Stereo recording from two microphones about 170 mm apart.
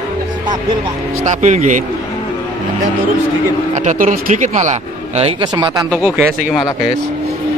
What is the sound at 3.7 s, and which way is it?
Speech, 45° right (ahead or behind).